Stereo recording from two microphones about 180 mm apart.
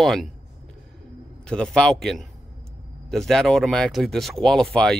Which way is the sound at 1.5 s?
5° left (ahead or behind).